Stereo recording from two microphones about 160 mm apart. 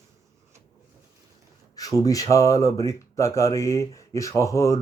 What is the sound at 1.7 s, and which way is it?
Speech, 20° left (ahead or behind).